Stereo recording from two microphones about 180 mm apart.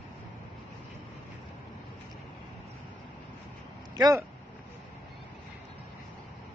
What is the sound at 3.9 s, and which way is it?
Speech, 20° right (ahead or behind).